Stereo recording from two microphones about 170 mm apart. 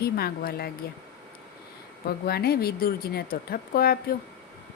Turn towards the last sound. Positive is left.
turn(degrees=65)  # may be behind; listen again after turning